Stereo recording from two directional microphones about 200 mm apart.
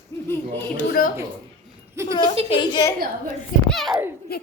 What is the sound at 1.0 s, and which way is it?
Speech, 45° left (ahead or behind).